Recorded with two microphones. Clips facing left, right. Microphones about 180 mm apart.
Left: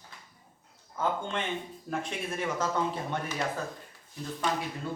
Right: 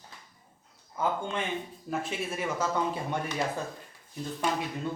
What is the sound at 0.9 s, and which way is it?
A man's voice, 10° right (ahead or behind).